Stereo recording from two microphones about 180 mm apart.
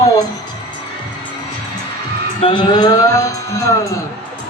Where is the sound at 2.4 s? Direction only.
25° left (ahead or behind).